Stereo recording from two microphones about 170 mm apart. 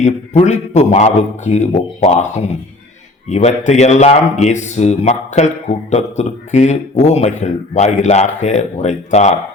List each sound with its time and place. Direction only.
0.0 s speech: 40° left (ahead or behind)
3.2 s speech: 40° left (ahead or behind)